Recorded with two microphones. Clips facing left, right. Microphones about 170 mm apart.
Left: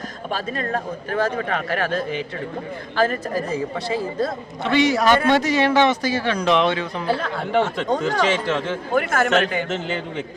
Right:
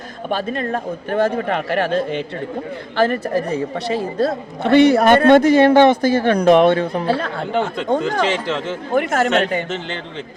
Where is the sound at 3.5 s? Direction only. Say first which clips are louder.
Right 3 dB; 65° right (ahead or behind).